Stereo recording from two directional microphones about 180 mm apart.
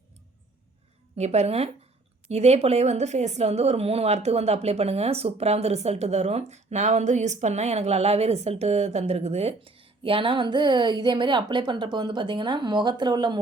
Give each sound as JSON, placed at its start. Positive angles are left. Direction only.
{"t": 1.1, "sound": "speech", "side_deg": -35}